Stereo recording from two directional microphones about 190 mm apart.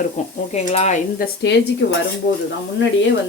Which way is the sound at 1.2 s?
65° left (ahead or behind).